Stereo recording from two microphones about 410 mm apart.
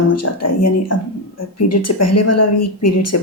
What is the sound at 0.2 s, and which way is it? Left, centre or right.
Speech, left.